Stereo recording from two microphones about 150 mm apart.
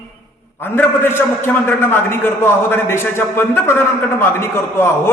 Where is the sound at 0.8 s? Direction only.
15° left (ahead or behind).